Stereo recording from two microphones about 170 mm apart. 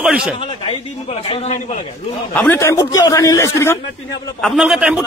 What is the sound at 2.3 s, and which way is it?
A man's voice, 10° left (ahead or behind).